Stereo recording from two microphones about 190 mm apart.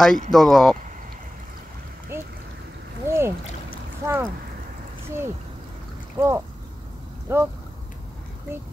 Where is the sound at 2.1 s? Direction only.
15° right (ahead or behind).